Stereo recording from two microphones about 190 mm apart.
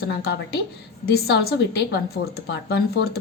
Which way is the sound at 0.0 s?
55° left (ahead or behind).